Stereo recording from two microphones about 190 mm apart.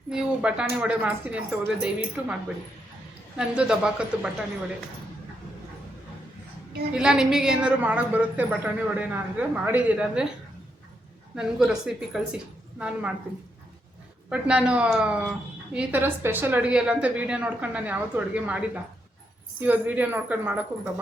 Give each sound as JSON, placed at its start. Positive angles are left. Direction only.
{"t": 0.1, "sound": "speech", "side_deg": -5}
{"t": 3.3, "sound": "speech", "side_deg": -5}
{"t": 6.9, "sound": "speech", "side_deg": -5}
{"t": 11.3, "sound": "speech", "side_deg": -5}
{"t": 14.3, "sound": "speech", "side_deg": -5}